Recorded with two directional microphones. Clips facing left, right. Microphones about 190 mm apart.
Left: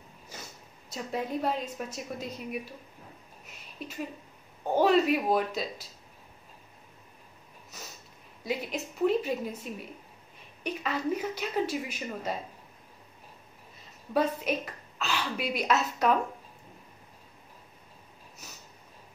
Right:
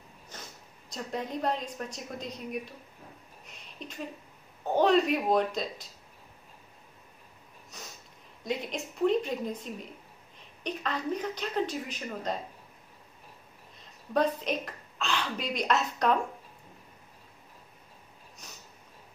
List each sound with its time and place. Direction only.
0.8 s a woman's voice: 5° left (ahead or behind)
3.4 s a sound: 5° left (ahead or behind)
4.7 s a woman's voice: 5° left (ahead or behind)
7.7 s a sound: 5° left (ahead or behind)
8.5 s a woman's voice: 5° left (ahead or behind)
14.1 s speech: 5° left (ahead or behind)
18.4 s sniff: 5° left (ahead or behind)